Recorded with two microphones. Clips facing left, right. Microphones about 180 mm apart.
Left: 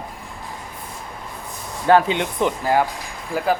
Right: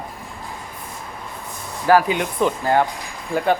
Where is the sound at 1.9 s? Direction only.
25° left (ahead or behind); by 3.5 s centre (ahead or behind).